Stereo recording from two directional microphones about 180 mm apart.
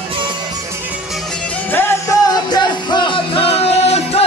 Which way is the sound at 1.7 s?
15° left (ahead or behind).